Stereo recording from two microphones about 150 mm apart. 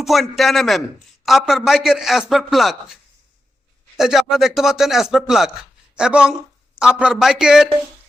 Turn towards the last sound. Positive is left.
turn(degrees=-5)  # may be behind; listen again after turning